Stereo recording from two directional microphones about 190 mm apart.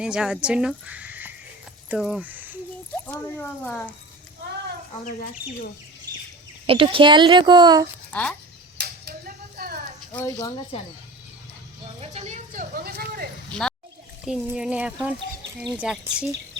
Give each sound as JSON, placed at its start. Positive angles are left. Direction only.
{"t": 0.0, "sound": "speech", "side_deg": -5}
{"t": 2.9, "sound": "speech", "side_deg": 10}
{"t": 6.7, "sound": "a woman's voice", "side_deg": -30}
{"t": 8.1, "sound": "speech", "side_deg": 5}
{"t": 8.8, "sound": "a sound", "side_deg": -55}
{"t": 10.1, "sound": "speech", "side_deg": 10}
{"t": 10.4, "sound": "speech", "side_deg": 30}
{"t": 11.9, "sound": "a sound", "side_deg": -30}
{"t": 13.5, "sound": "a sound", "side_deg": 5}
{"t": 14.3, "sound": "speech", "side_deg": -5}